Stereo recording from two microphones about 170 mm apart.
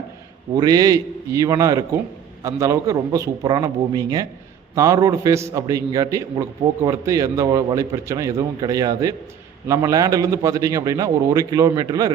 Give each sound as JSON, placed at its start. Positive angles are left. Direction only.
{"t": 0.5, "sound": "a man's voice", "side_deg": -20}